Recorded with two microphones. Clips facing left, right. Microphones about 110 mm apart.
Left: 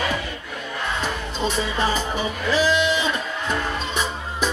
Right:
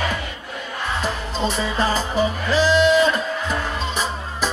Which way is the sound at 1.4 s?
35° right (ahead or behind).